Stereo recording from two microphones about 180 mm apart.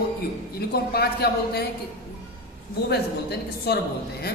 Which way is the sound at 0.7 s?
60° left (ahead or behind).